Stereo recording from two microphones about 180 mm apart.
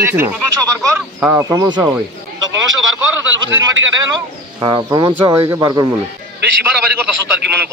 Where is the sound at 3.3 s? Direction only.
90° right.